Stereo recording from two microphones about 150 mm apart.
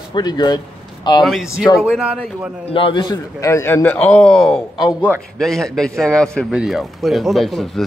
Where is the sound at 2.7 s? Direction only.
35° left (ahead or behind); by 7.8 s centre (ahead or behind).